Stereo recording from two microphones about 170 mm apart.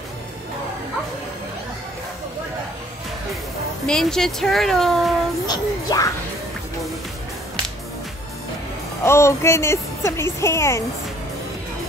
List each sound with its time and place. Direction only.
3.8 s speech: 5° left (ahead or behind)
5.5 s speech: 20° left (ahead or behind)
9.0 s speech: 15° left (ahead or behind)